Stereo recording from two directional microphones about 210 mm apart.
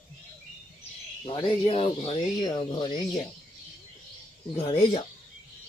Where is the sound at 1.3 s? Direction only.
25° left (ahead or behind).